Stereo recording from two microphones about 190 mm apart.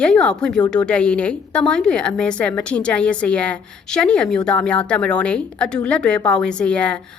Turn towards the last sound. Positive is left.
turn(degrees=5)  # may be behind; listen again after turning